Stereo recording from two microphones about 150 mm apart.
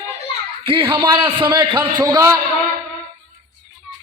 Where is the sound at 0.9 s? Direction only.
30° right (ahead or behind).